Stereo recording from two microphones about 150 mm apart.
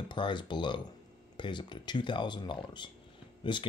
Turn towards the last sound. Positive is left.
turn(degrees=35)  # may be behind; listen again after turning